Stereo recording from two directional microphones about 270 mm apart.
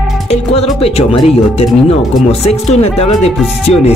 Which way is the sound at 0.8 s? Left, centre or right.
Left.